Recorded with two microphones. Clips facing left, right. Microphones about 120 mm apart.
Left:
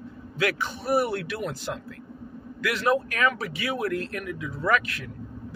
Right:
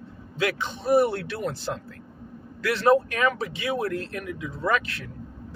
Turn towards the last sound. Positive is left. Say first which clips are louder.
# left 1 dB
turn(degrees=-30)  # may be behind; listen again after turning